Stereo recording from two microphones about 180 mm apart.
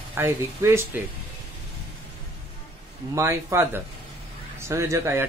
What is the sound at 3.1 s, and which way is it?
Speech, 15° right (ahead or behind).